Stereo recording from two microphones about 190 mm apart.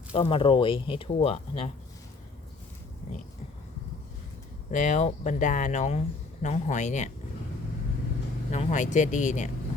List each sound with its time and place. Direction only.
0.2 s speech: 30° left (ahead or behind)
4.7 s speech: 40° left (ahead or behind)
8.4 s speech: 40° left (ahead or behind)